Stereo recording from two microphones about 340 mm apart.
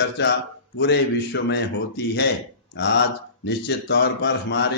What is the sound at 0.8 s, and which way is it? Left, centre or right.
Speech, left.